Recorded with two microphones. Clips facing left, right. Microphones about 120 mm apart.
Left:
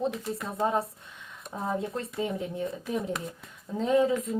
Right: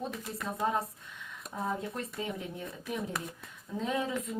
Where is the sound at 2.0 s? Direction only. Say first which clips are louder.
Left 6 dB; 25° left (ahead or behind).